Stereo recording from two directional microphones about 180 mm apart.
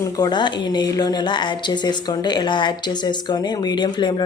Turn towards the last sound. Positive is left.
turn(degrees=25)  # may be behind; listen again after turning